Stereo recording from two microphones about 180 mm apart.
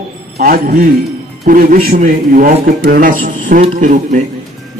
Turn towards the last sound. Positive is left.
turn(degrees=-45)  # may be behind; listen again after turning